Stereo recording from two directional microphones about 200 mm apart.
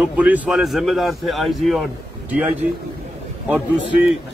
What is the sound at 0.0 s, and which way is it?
Speech, 5° right (ahead or behind).